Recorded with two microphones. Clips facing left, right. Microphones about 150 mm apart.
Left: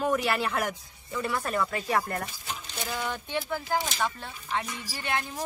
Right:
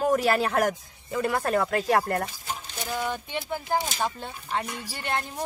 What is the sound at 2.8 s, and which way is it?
Speech, 10° right (ahead or behind).